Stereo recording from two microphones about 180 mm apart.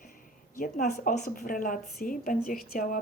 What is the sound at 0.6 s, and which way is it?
Speech, 45° left (ahead or behind).